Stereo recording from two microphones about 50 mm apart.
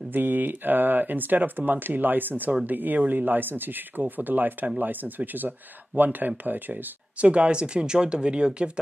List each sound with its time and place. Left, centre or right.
0.1 s speech: right; by 8.7 s centre